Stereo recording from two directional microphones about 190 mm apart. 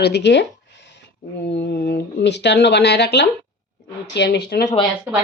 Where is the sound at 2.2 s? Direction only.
65° left (ahead or behind).